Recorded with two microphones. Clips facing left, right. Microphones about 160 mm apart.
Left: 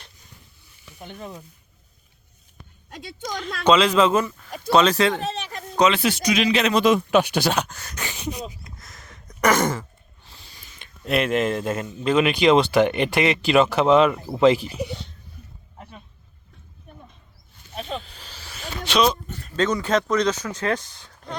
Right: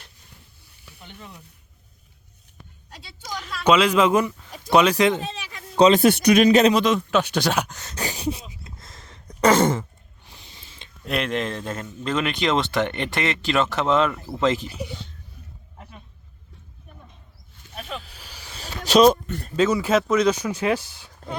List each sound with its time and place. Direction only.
0.9 s speech: 45° left (ahead or behind)
2.9 s a woman's voice: 50° left (ahead or behind)
3.6 s speech: 10° right (ahead or behind)
5.7 s speech: 30° right (ahead or behind)
6.0 s speech: 55° right (ahead or behind); by 6.7 s 40° right (ahead or behind)
6.7 s speech: 10° left (ahead or behind)
7.5 s speech: 10° right (ahead or behind)
7.9 s a sound: 35° right (ahead or behind)
11.0 s speech: 5° left (ahead or behind)
17.7 s a sound: 30° left (ahead or behind)
18.0 s a sound: 10° right (ahead or behind)
18.5 s a sound: 40° right (ahead or behind)
19.5 s speech: 5° right (ahead or behind)